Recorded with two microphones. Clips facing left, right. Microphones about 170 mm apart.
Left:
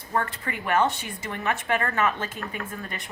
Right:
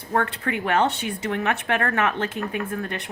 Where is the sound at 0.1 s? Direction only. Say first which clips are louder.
Right 4 dB; 65° right (ahead or behind).